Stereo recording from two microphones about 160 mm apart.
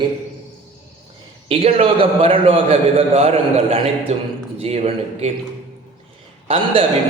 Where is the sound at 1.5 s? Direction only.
40° right (ahead or behind).